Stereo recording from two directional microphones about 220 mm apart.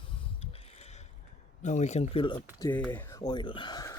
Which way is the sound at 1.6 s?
30° left (ahead or behind).